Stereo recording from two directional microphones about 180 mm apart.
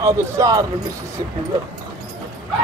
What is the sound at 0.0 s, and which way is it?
Speech, 15° right (ahead or behind).